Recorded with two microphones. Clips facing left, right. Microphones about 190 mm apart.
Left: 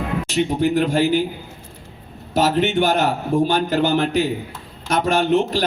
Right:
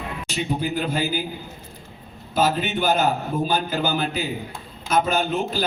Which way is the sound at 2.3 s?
75° left (ahead or behind).